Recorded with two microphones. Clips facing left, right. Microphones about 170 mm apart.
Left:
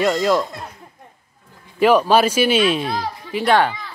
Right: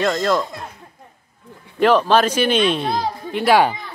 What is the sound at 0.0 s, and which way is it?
Speech, 10° left (ahead or behind).